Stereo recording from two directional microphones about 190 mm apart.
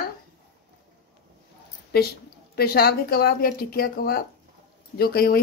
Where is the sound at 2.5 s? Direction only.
55° left (ahead or behind).